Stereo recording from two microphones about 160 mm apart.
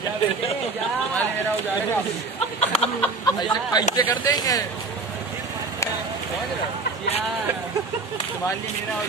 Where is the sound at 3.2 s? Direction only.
25° left (ahead or behind).